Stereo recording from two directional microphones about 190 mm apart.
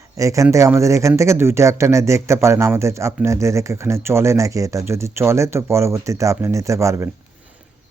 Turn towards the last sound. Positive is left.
turn(degrees=-15)  # may be behind; listen again after turning